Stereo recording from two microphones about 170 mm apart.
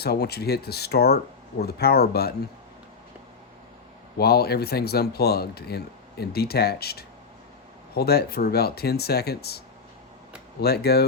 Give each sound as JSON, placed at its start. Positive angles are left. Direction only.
{"t": 0.0, "sound": "speech", "side_deg": 65}
{"t": 4.2, "sound": "speech", "side_deg": 65}
{"t": 10.6, "sound": "speech", "side_deg": 65}